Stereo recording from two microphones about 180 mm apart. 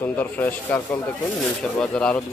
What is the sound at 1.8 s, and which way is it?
Speech, 5° left (ahead or behind).